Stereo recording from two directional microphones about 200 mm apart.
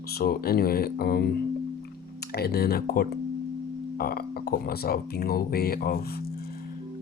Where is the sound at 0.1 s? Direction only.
50° left (ahead or behind).